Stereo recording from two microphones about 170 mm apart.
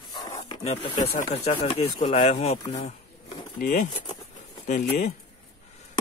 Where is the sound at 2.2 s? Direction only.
40° left (ahead or behind).